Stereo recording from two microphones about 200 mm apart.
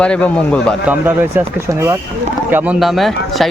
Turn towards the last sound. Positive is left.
turn(degrees=0)  # may be behind; listen again after turning